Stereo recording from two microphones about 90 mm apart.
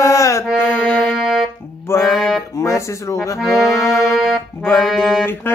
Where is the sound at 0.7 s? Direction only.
15° left (ahead or behind).